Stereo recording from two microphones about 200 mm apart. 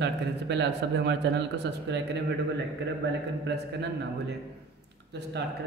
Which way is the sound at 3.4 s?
60° right (ahead or behind).